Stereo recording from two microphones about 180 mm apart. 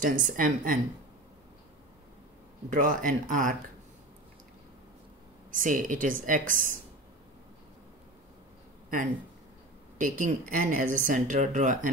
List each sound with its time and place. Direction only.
0.0 s speech: 45° right (ahead or behind)
2.7 s speech: 45° right (ahead or behind)
5.5 s speech: 50° right (ahead or behind)
9.9 s speech: 45° right (ahead or behind)